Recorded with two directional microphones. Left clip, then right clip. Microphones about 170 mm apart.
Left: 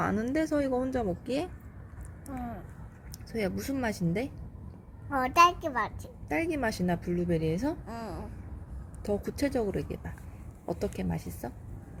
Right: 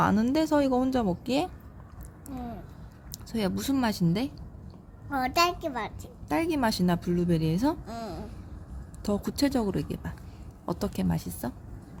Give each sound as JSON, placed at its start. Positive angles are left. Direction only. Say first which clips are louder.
{"t": 0.0, "sound": "speech", "louder": "right 4 dB", "side_deg": -55}
{"t": 3.3, "sound": "speech", "louder": "right 3 dB", "side_deg": -50}
{"t": 5.0, "sound": "a child's voice", "louder": "left 3 dB", "side_deg": -20}
{"t": 5.5, "sound": "speech", "louder": "left 1 dB", "side_deg": -35}
{"t": 7.9, "sound": "a child's voice", "louder": "right 2 dB", "side_deg": -20}
{"t": 9.0, "sound": "speech", "louder": "right 2 dB", "side_deg": -60}